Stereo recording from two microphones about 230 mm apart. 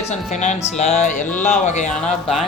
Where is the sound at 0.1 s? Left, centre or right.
Left.